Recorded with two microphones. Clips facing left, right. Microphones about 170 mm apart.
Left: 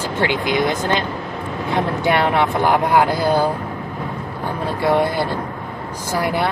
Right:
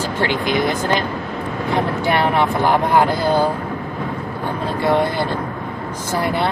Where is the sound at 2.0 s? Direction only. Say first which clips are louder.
Left 1 dB; 20° left (ahead or behind).